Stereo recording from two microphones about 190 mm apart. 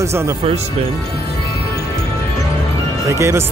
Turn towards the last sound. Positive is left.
turn(degrees=-15)  # may be behind; listen again after turning